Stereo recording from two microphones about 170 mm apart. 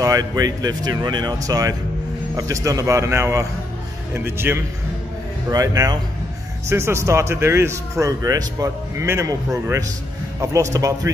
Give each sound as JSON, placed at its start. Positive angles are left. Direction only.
{"t": 0.0, "sound": "speech", "side_deg": -20}
{"t": 10.4, "sound": "speech", "side_deg": -20}